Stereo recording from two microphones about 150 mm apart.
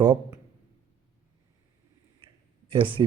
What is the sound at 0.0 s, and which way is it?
Speech, 20° right (ahead or behind).